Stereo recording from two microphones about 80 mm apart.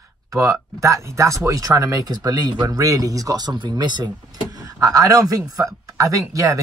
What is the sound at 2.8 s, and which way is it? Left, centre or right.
Speech, right.